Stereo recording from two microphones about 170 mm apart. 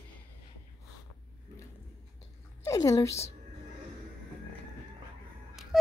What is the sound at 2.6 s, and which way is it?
Speech, 20° left (ahead or behind).